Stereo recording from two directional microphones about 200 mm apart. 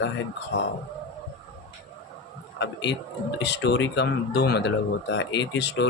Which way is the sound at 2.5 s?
60° left (ahead or behind).